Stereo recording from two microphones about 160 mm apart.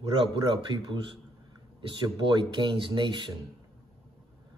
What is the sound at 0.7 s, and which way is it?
Speech, 25° right (ahead or behind).